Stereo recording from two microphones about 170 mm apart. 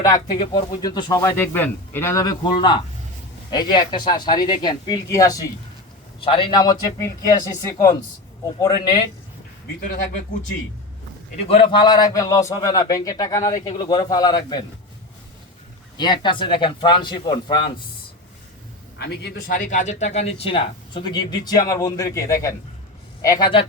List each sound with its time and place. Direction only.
0.0 s a man's voice: 20° left (ahead or behind)
6.2 s a man's voice: 30° left (ahead or behind)
9.8 s a man's voice: 55° left (ahead or behind)
11.3 s a man's voice: 35° left (ahead or behind)
16.0 s a man's voice: 25° left (ahead or behind)
18.9 s a man's voice: 75° left (ahead or behind); by 23.5 s 20° left (ahead or behind)